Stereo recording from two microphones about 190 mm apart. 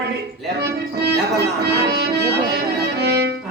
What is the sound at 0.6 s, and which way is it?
Music, 60° right (ahead or behind).